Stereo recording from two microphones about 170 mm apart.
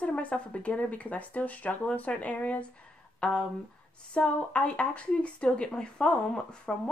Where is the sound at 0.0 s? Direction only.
5° left (ahead or behind).